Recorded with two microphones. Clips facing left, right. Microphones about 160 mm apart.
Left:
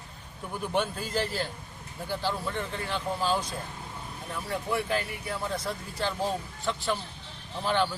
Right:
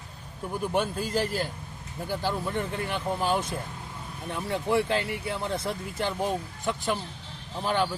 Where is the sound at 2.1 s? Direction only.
15° right (ahead or behind).